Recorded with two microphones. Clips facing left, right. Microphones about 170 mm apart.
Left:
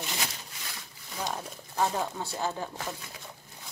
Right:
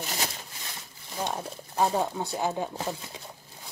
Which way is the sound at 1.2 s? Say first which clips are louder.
Right 3 dB; 25° right (ahead or behind).